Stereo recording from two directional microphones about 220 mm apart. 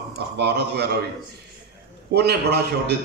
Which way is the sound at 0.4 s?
50° right (ahead or behind).